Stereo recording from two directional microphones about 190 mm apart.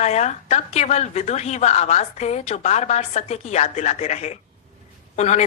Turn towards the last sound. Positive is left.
turn(degrees=35)  # may be behind; listen again after turning